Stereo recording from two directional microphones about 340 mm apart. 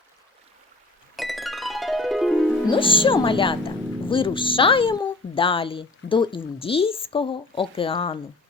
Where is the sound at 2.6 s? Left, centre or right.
Centre.